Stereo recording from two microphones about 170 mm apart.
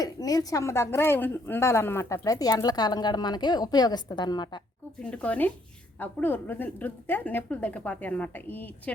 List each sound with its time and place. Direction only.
0.0 s speech: 20° left (ahead or behind)
4.9 s a woman's voice: 10° left (ahead or behind)